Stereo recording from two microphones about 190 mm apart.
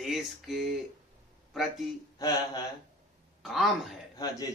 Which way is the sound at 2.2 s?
20° left (ahead or behind).